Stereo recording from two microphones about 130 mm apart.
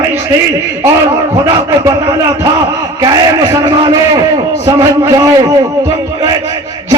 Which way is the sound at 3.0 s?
35° right (ahead or behind).